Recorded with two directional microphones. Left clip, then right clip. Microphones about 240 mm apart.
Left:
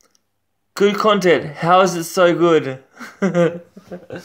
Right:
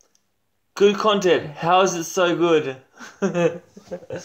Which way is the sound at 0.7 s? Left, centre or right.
Left.